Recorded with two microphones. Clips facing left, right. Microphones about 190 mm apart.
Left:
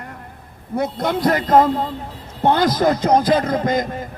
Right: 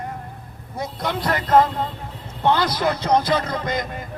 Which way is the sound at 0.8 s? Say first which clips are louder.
Left 6 dB; 50° left (ahead or behind).